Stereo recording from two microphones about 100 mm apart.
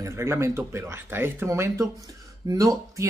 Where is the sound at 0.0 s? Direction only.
25° right (ahead or behind).